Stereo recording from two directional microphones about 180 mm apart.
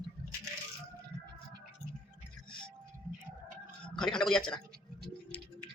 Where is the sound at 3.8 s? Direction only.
5° left (ahead or behind).